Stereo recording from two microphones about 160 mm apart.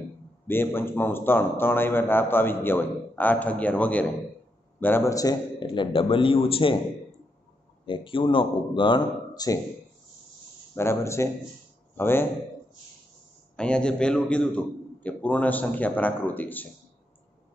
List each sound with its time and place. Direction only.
0.5 s a man's voice: 15° left (ahead or behind); by 6.8 s 35° left (ahead or behind)
7.8 s a man's voice: 30° left (ahead or behind)
10.7 s a man's voice: 15° left (ahead or behind)
13.6 s a man's voice: 5° left (ahead or behind)